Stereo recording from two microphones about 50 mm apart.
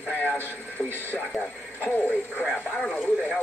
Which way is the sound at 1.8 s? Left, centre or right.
Left.